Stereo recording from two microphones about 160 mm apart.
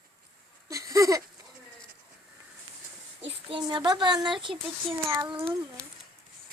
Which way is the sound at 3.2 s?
35° right (ahead or behind).